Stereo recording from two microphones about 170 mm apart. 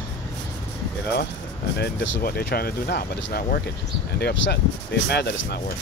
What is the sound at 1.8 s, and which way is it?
Speech, 65° left (ahead or behind).